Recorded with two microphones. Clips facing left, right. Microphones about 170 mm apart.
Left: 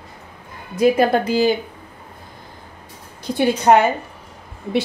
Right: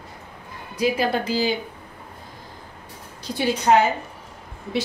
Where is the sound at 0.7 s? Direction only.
50° left (ahead or behind).